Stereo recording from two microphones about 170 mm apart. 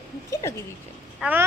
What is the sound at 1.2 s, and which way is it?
Speech, 10° right (ahead or behind).